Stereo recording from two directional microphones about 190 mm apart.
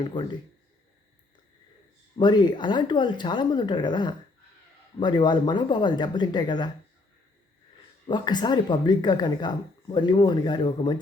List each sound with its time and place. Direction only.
0.0 s speech: 25° left (ahead or behind)
2.1 s speech: 25° left (ahead or behind)
8.0 s speech: 25° left (ahead or behind)